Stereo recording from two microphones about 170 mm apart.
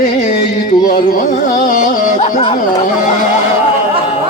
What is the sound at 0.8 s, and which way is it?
Carnatic music, 55° left (ahead or behind).